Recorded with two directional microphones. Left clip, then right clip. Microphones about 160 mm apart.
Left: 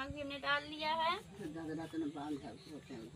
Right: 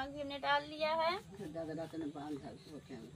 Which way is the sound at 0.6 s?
Centre (ahead or behind).